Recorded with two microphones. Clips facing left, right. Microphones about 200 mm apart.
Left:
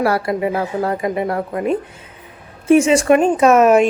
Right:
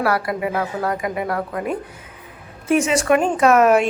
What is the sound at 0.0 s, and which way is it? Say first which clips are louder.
A woman's voice: left 3 dB; 25° left (ahead or behind).